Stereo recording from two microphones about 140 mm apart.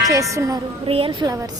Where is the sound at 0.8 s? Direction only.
40° right (ahead or behind).